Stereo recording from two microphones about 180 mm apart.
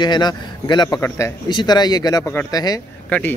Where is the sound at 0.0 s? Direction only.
25° left (ahead or behind).